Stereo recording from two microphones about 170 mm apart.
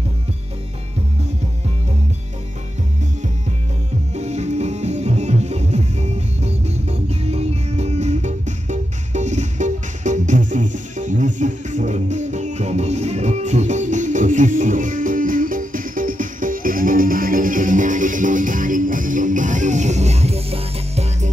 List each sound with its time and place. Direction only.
4.1 s music: 40° right (ahead or behind)